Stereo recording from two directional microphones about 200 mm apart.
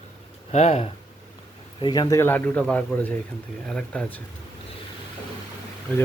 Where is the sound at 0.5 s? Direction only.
35° left (ahead or behind).